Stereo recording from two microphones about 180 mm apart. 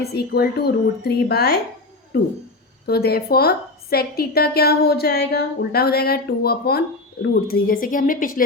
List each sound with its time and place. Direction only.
0.0 s a woman's voice: 65° left (ahead or behind)